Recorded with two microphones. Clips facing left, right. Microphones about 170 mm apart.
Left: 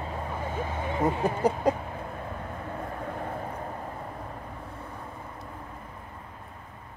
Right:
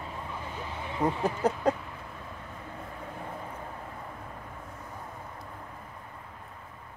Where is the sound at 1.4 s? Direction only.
10° left (ahead or behind).